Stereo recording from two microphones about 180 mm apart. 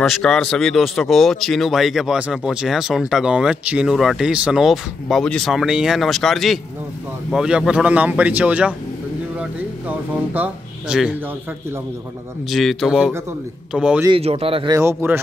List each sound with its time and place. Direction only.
0.0 s a man's voice: centre (ahead or behind)
12.4 s speech: centre (ahead or behind)
14.0 s speech: 30° right (ahead or behind)
14.8 s a man's voice: 15° right (ahead or behind)